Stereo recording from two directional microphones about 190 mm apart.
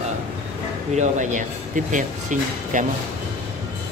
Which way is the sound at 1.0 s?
40° right (ahead or behind).